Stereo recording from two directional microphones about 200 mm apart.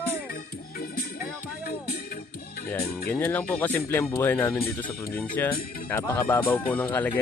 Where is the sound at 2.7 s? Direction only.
15° left (ahead or behind).